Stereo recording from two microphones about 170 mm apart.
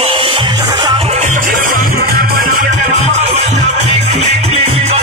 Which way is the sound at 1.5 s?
60° right (ahead or behind).